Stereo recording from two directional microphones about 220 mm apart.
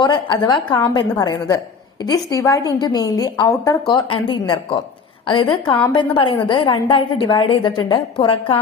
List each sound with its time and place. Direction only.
0.0 s a woman's voice: 20° left (ahead or behind)